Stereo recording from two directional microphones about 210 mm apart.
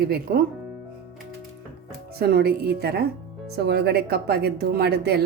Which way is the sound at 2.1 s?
50° right (ahead or behind).